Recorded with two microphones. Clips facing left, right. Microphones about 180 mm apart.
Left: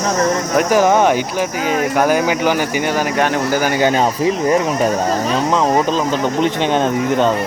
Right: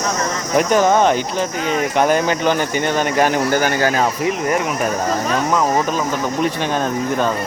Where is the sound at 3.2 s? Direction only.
Centre (ahead or behind).